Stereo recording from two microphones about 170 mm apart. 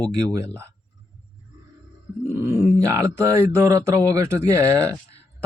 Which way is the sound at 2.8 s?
15° right (ahead or behind).